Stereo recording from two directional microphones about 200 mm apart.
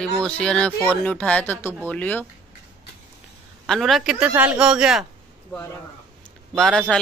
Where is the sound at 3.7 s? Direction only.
Centre (ahead or behind).